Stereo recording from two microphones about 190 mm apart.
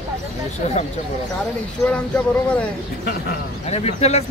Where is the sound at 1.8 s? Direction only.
5° left (ahead or behind).